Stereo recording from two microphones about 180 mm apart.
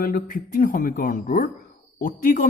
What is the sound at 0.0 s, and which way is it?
A man's voice, 50° left (ahead or behind).